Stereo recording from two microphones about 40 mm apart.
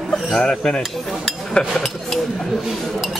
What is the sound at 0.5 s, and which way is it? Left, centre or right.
Speech, centre.